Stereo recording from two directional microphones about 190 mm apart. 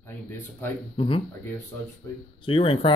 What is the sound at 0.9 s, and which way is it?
Speech, 30° left (ahead or behind).